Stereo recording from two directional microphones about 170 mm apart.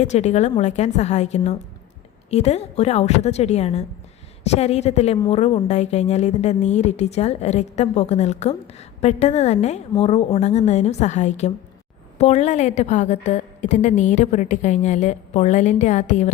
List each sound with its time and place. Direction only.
0.0 s a woman's voice: 40° left (ahead or behind)